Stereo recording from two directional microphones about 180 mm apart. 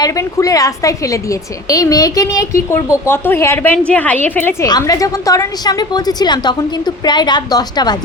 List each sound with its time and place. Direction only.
0.0 s a woman's voice: 20° left (ahead or behind)